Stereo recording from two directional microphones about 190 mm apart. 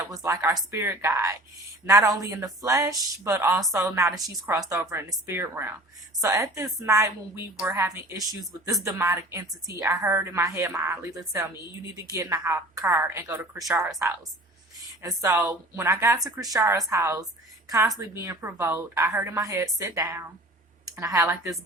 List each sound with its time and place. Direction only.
0.0 s a woman's voice: 15° right (ahead or behind)
15.0 s a woman's voice: 20° right (ahead or behind)